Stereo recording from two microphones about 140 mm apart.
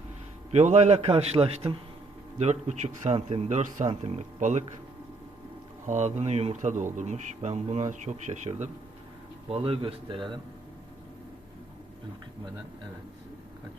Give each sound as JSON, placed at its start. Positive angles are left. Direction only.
{"t": 0.5, "sound": "a man's voice", "side_deg": -55}
{"t": 2.4, "sound": "speech", "side_deg": -55}
{"t": 5.8, "sound": "speech", "side_deg": -60}
{"t": 9.5, "sound": "a man's voice", "side_deg": -45}